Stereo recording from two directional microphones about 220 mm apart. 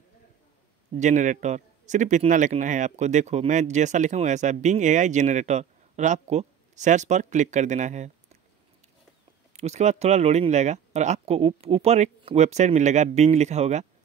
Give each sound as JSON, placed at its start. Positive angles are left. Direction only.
{"t": 0.9, "sound": "a man's voice", "side_deg": -35}
{"t": 9.5, "sound": "a man's voice", "side_deg": -30}